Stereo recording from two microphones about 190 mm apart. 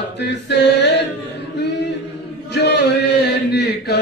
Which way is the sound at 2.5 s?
65° left (ahead or behind).